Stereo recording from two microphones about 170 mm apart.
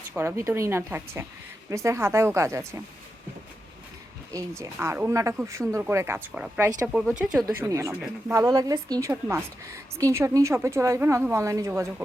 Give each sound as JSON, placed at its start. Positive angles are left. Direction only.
{"t": 0.1, "sound": "a woman's voice", "side_deg": -15}
{"t": 4.3, "sound": "a woman's voice", "side_deg": -20}
{"t": 7.4, "sound": "a woman's voice", "side_deg": -15}